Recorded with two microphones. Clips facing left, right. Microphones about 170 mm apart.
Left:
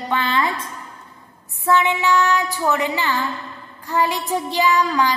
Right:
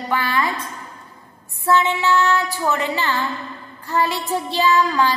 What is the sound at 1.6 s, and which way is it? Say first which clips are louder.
Child singing: even; 15° left (ahead or behind).